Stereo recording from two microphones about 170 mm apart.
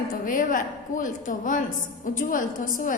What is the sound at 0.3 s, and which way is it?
A woman's voice, 50° left (ahead or behind).